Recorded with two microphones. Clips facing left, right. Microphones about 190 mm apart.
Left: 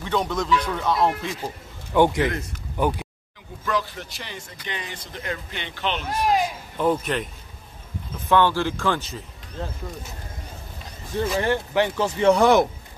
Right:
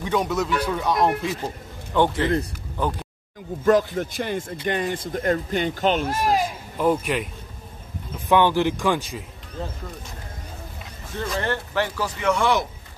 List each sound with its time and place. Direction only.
0.0 s speech: 10° right (ahead or behind)
2.0 s speech: 15° left (ahead or behind)
3.6 s speech: 50° right (ahead or behind)
6.0 s speech: centre (ahead or behind)
8.3 s speech: 15° right (ahead or behind)
11.1 s speech: 10° left (ahead or behind)
12.2 s speech: 35° left (ahead or behind)